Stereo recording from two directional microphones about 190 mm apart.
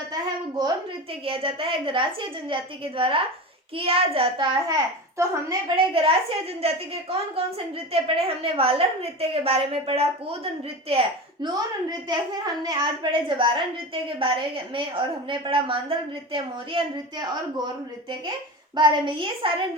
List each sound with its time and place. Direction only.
0.1 s a sound: 20° right (ahead or behind)
1.2 s a woman's voice: 30° right (ahead or behind)
11.4 s a woman's voice: 20° right (ahead or behind)
18.8 s a woman's voice: 25° right (ahead or behind)